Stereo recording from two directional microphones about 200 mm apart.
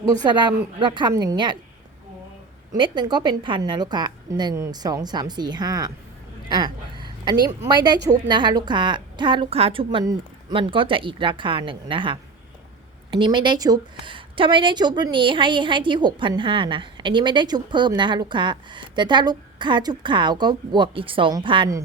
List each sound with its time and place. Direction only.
0.2 s a woman's voice: 20° right (ahead or behind)
2.7 s a woman's voice: 20° right (ahead or behind)
6.9 s a woman's voice: 20° right (ahead or behind)